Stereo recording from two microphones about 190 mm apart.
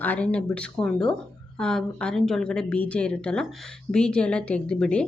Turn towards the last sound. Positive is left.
turn(degrees=5)  # may be behind; listen again after turning